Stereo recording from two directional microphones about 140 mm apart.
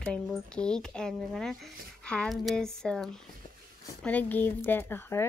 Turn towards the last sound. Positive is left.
turn(degrees=15)  # may be behind; listen again after turning